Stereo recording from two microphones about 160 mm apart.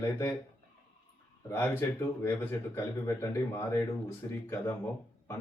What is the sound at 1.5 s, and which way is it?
Speech, 15° left (ahead or behind).